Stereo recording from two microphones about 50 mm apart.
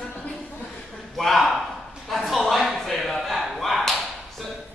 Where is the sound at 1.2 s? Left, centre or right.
Centre.